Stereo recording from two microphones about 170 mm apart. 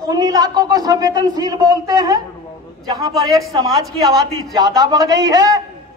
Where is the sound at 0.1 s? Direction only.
20° right (ahead or behind).